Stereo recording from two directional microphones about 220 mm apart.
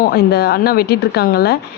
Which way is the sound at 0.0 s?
45° left (ahead or behind).